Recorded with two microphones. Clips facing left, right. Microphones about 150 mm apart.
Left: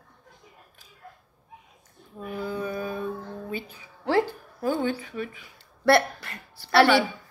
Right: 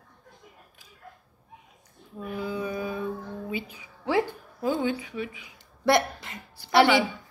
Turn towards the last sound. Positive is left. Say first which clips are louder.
# left 1 dB
turn(degrees=-15)  # may be behind; listen again after turning